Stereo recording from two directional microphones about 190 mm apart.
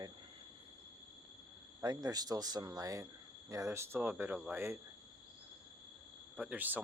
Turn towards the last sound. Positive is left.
turn(degrees=-10)  # may be behind; listen again after turning